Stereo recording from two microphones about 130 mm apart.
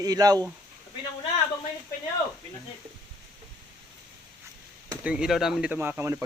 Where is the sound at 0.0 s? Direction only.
30° right (ahead or behind).